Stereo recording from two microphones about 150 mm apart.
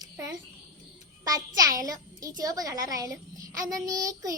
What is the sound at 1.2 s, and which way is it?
A child's voice, 25° right (ahead or behind).